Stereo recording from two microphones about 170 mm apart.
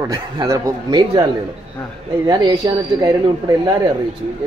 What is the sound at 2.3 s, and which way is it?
Speech, 25° right (ahead or behind).